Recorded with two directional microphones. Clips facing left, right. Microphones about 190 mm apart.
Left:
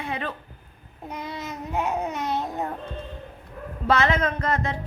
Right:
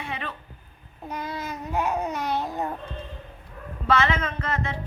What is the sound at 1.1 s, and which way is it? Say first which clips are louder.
Babbling: right 1 dB; 25° left (ahead or behind).